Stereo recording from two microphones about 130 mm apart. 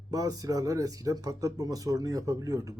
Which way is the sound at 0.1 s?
30° right (ahead or behind).